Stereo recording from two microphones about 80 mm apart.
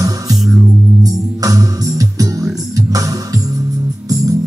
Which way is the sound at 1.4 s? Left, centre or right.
Right.